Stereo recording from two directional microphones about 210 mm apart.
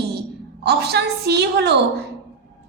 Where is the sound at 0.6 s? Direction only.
50° right (ahead or behind).